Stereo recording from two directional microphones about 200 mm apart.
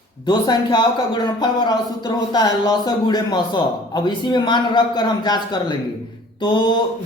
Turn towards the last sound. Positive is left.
turn(degrees=25)  # may be behind; listen again after turning